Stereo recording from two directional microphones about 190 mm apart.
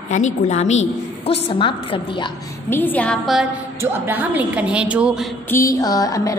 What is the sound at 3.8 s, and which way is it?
A woman's voice, 10° right (ahead or behind).